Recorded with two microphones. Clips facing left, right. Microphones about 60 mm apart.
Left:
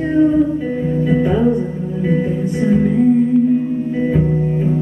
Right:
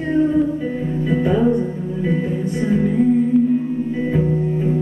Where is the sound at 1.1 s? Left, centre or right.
Centre.